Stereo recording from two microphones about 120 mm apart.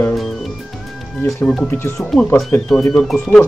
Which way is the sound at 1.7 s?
15° left (ahead or behind).